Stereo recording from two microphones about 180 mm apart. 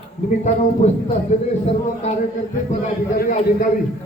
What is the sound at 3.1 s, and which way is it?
Speech, 55° left (ahead or behind).